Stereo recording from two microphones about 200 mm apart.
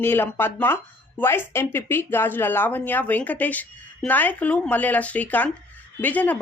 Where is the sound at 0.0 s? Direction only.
10° left (ahead or behind).